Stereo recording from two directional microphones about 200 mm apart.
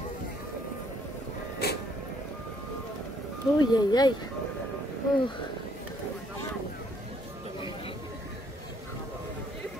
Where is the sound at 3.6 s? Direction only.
20° left (ahead or behind).